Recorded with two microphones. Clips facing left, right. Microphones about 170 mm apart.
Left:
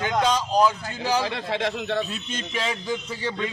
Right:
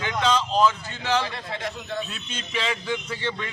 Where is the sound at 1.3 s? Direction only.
85° left.